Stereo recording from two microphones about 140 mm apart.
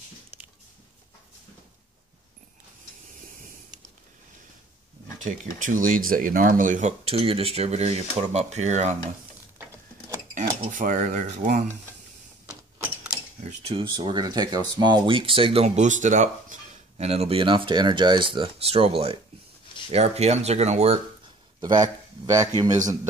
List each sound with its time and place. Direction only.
5.2 s speech: 65° right (ahead or behind)
10.7 s speech: 70° right (ahead or behind)
12.4 s a sound: 10° right (ahead or behind)
13.4 s speech: 55° right (ahead or behind)
13.7 s speech: 35° right (ahead or behind); by 16.5 s 65° right (ahead or behind)
17.0 s speech: 45° right (ahead or behind)
21.5 s speech: 25° right (ahead or behind)